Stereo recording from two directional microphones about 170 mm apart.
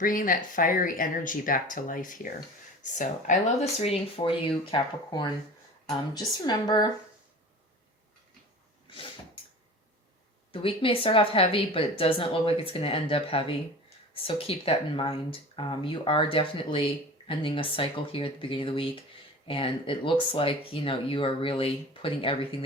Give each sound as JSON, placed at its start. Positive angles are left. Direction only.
{"t": 0.0, "sound": "speech", "side_deg": 55}
{"t": 10.5, "sound": "speech", "side_deg": 30}